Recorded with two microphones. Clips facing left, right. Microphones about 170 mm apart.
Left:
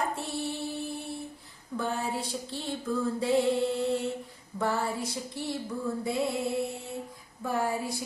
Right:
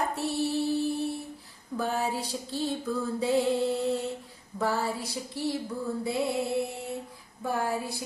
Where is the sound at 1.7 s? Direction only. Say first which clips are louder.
Right 1 dB; centre (ahead or behind).